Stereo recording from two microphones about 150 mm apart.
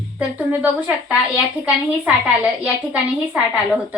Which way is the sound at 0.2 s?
10° right (ahead or behind).